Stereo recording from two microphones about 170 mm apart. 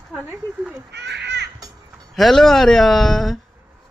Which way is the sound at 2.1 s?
Centre (ahead or behind).